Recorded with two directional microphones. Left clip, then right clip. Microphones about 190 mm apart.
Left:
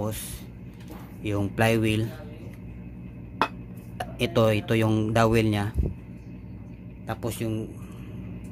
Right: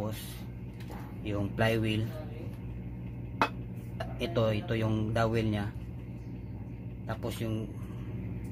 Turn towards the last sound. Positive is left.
turn(degrees=25)  # may be behind; listen again after turning